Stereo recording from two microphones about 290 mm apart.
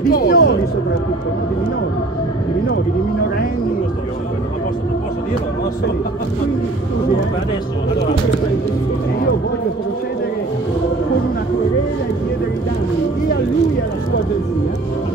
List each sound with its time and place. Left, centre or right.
0.1 s speech: left